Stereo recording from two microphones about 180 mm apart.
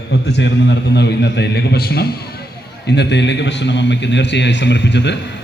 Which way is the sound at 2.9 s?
70° left (ahead or behind).